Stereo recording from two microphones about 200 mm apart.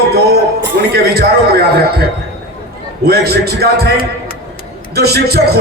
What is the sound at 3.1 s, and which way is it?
Speech, 55° right (ahead or behind).